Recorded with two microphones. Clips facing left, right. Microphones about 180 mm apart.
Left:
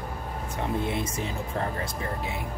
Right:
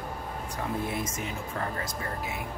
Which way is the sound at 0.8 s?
25° left (ahead or behind).